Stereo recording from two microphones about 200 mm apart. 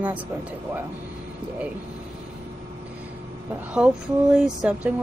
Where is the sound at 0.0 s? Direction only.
10° right (ahead or behind).